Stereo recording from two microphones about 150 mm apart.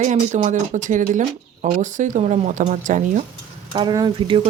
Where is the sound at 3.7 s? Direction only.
30° right (ahead or behind).